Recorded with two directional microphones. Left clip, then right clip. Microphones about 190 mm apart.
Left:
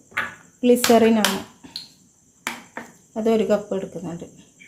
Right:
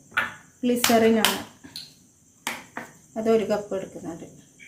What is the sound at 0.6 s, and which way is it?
Speech, 40° left (ahead or behind).